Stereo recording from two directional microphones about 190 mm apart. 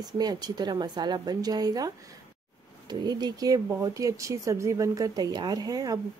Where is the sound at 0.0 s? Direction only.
20° right (ahead or behind).